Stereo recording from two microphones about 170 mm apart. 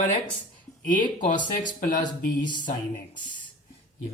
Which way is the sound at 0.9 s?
50° left (ahead or behind).